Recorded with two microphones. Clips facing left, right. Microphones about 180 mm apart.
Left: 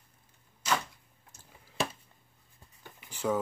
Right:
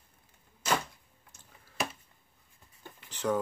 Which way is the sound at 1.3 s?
35° left (ahead or behind).